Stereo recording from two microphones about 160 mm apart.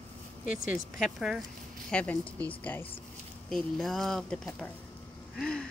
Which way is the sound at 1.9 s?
10° left (ahead or behind).